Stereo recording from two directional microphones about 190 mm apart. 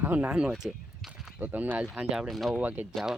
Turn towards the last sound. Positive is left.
turn(degrees=-5)  # may be behind; listen again after turning